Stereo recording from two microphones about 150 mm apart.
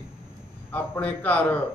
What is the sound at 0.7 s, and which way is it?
Speech, 10° left (ahead or behind).